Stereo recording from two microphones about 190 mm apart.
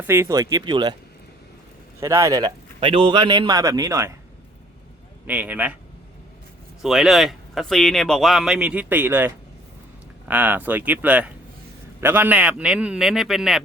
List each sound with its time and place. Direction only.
0.1 s speech: 15° right (ahead or behind)
2.0 s a man's voice: 15° right (ahead or behind)
5.2 s speech: 5° right (ahead or behind)
6.8 s speech: centre (ahead or behind)